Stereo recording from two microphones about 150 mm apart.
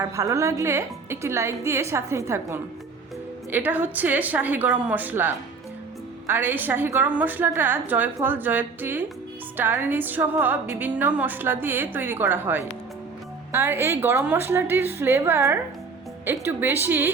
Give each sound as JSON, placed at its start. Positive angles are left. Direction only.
{"t": 0.0, "sound": "a woman's voice", "side_deg": -20}